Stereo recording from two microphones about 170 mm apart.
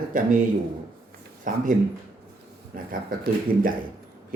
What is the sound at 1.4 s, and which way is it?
Speech, 50° right (ahead or behind).